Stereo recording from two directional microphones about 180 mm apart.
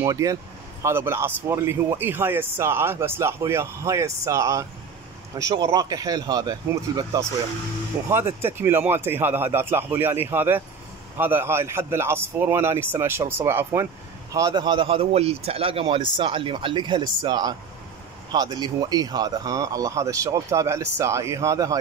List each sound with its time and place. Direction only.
0.0 s a man's voice: 20° right (ahead or behind)